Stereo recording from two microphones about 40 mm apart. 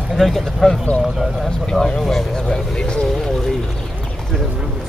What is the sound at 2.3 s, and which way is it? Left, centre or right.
Vehicle, centre.